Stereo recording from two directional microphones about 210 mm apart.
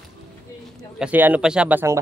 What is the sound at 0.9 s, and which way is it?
Speech, 5° right (ahead or behind).